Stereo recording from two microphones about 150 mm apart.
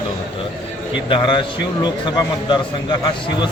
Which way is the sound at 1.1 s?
30° left (ahead or behind).